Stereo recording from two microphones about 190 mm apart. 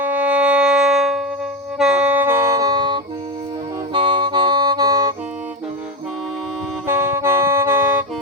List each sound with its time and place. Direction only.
0.0 s music: 10° right (ahead or behind)
6.8 s saxophone: 15° right (ahead or behind)